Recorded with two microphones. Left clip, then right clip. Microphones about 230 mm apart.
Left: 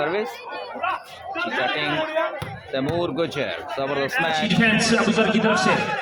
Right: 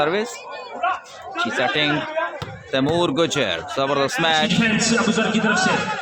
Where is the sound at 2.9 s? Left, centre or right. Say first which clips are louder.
Right 5 dB; right.